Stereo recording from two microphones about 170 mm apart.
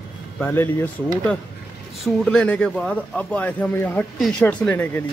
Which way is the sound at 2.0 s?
5° left (ahead or behind).